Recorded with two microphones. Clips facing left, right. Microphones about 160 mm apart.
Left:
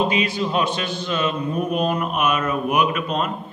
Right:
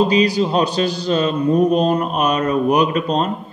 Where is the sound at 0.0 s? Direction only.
35° right (ahead or behind).